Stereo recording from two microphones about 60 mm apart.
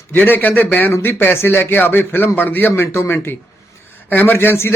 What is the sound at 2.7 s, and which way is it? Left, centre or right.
A man's voice, left.